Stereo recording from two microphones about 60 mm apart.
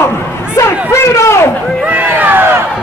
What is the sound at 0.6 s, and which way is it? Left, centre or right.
Chatter, left.